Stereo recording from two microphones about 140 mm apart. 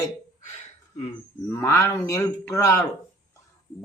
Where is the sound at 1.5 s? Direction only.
20° left (ahead or behind).